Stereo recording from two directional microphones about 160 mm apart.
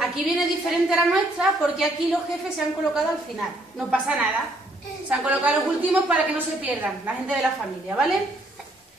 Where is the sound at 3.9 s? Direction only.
5° right (ahead or behind).